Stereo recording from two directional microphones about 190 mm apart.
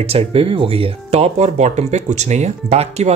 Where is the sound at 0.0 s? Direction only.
30° right (ahead or behind).